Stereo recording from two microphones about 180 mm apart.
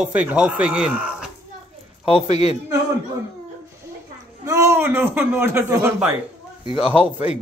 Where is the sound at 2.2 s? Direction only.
40° left (ahead or behind).